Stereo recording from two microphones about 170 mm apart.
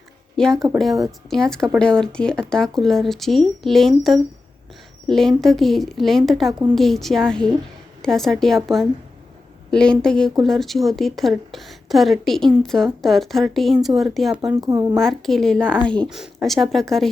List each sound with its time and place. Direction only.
0.3 s speech: 5° left (ahead or behind)
14.6 s speech: 20° right (ahead or behind)
14.9 s speech: centre (ahead or behind)